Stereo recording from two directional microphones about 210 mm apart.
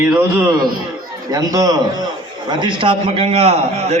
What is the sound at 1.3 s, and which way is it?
A man's voice, 15° right (ahead or behind).